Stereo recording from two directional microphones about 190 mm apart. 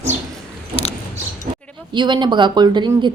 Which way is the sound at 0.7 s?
30° left (ahead or behind).